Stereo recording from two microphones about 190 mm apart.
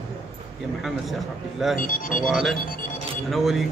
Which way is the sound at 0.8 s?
Centre (ahead or behind).